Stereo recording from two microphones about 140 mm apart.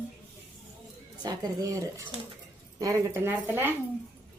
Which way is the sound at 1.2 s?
25° right (ahead or behind).